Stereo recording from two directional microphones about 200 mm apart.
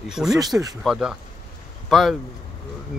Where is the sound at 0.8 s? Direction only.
Centre (ahead or behind).